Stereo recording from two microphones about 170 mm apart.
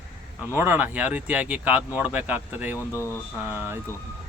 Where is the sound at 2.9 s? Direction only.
15° left (ahead or behind).